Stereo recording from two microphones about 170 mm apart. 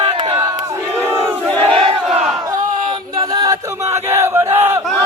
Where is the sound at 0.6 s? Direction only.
20° right (ahead or behind).